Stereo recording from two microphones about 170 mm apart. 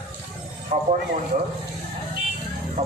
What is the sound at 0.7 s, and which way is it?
Speech, 45° right (ahead or behind).